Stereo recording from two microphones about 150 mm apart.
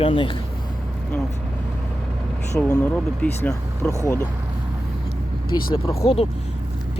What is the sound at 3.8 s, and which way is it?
Speech, 10° left (ahead or behind).